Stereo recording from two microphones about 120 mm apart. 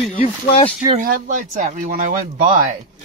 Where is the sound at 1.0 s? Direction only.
90° right.